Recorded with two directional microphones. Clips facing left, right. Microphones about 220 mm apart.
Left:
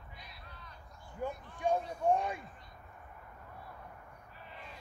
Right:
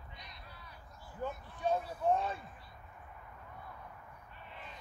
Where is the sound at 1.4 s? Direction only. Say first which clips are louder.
Left 2 dB; 15° left (ahead or behind).